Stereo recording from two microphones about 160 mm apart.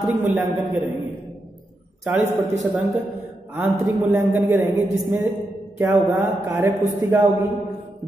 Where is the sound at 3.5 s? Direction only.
10° right (ahead or behind).